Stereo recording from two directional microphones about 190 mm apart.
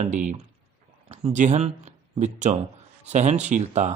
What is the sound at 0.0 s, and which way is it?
Speech, 40° right (ahead or behind).